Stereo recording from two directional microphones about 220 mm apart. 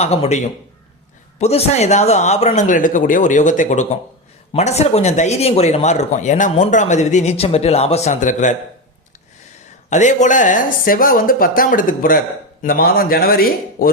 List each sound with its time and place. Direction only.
0.0 s a man's voice: 30° left (ahead or behind)
9.9 s speech: 35° left (ahead or behind)